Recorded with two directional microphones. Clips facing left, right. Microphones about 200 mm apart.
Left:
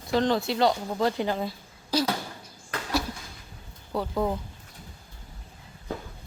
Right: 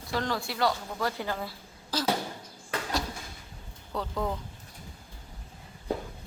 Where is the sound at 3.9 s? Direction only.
15° left (ahead or behind).